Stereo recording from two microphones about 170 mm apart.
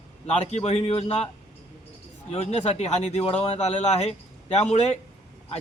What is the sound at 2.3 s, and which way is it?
Speech, 35° left (ahead or behind).